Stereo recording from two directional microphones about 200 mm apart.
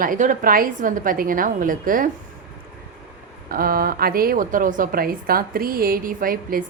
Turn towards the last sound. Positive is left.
turn(degrees=-45)  # may be behind; listen again after turning